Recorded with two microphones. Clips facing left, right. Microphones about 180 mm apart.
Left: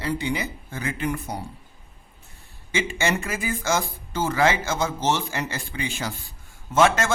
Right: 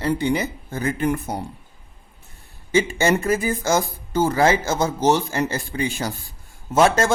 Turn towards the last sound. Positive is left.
turn(degrees=-35)  # may be behind; listen again after turning